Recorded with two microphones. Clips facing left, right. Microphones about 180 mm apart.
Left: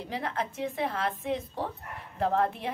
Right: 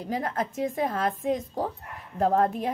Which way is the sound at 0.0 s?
45° right (ahead or behind).